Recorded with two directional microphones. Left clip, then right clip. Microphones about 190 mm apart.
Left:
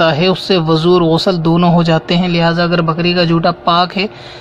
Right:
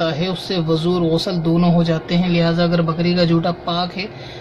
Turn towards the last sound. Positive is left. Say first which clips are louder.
# left 10 dB
turn(degrees=50)  # may be behind; listen again after turning